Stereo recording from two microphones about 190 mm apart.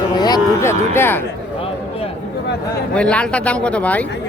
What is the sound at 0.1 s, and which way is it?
Music, 20° left (ahead or behind).